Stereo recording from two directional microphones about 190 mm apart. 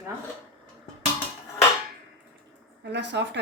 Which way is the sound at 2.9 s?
65° right (ahead or behind).